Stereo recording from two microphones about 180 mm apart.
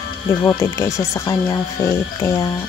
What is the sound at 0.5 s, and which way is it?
Speech, 15° left (ahead or behind).